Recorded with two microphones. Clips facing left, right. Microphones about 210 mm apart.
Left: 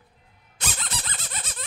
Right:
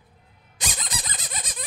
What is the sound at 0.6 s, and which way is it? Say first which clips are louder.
Squeak: even; 15° right (ahead or behind).